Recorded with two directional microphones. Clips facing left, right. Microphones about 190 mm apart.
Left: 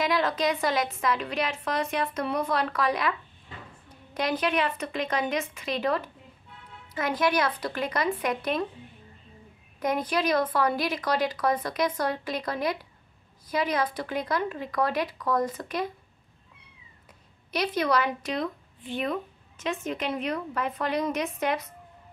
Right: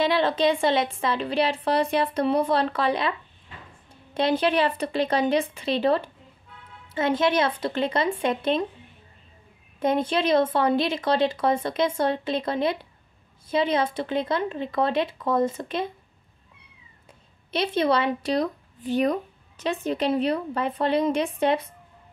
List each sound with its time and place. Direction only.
0.0 s a woman's voice: 30° right (ahead or behind)
9.8 s a woman's voice: 25° right (ahead or behind)
17.5 s a woman's voice: 25° right (ahead or behind)